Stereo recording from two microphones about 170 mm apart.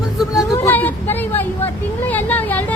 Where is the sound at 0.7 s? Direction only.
10° left (ahead or behind).